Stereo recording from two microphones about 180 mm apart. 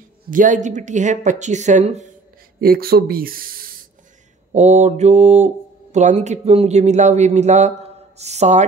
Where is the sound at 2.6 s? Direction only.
55° right (ahead or behind).